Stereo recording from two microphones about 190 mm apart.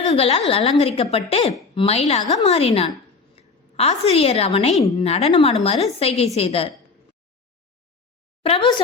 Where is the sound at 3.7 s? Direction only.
35° left (ahead or behind).